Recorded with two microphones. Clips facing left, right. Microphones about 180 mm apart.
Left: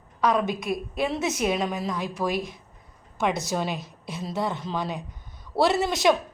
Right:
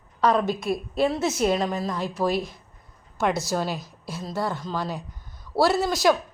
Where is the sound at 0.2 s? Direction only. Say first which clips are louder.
Right 2 dB; 15° left (ahead or behind).